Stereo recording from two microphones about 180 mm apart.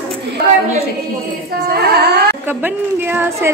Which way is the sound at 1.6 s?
60° right (ahead or behind).